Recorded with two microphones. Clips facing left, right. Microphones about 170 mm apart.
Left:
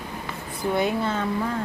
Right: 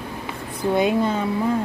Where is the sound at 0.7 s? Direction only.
20° right (ahead or behind).